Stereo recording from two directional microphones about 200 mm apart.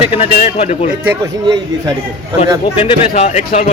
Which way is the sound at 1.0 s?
15° right (ahead or behind).